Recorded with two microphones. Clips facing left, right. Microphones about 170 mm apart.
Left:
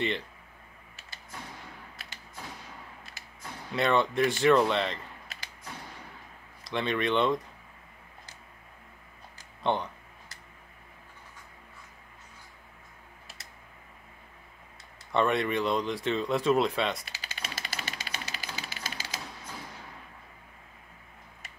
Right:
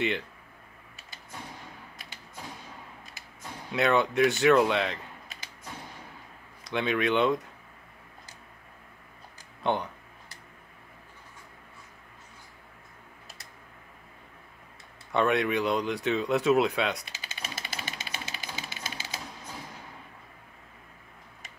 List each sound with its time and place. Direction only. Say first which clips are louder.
3.7 s speech: right 1 dB; centre (ahead or behind)
6.6 s speech: right 2 dB; centre (ahead or behind)
9.6 s speech: even; centre (ahead or behind)
15.1 s speech: right 1 dB; centre (ahead or behind)
17.1 s jackhammer: even; 20° right (ahead or behind)